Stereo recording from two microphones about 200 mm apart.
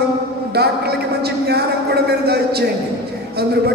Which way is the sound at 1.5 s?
55° right (ahead or behind).